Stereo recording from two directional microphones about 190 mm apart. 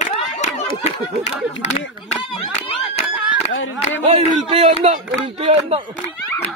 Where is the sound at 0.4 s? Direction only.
35° left (ahead or behind).